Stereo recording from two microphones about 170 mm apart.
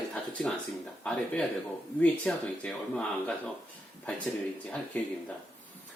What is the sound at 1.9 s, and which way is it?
Speech, 5° left (ahead or behind).